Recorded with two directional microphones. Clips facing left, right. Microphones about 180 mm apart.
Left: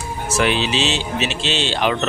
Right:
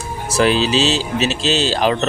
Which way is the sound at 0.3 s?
35° right (ahead or behind).